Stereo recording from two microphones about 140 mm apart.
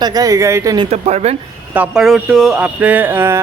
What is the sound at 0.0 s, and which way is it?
Speech, 25° right (ahead or behind).